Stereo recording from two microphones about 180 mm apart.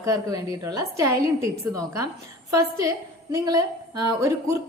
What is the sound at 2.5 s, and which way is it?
A woman's voice, 20° right (ahead or behind).